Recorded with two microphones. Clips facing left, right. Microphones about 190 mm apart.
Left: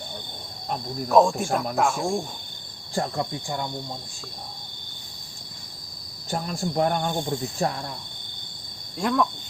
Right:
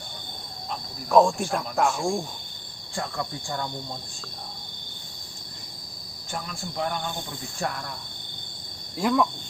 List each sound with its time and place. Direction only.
1.1 s speech: centre (ahead or behind)
2.9 s cricket: 35° left (ahead or behind)
6.3 s speech: 40° left (ahead or behind)
7.6 s cricket: 30° left (ahead or behind)
9.0 s speech: 5° right (ahead or behind)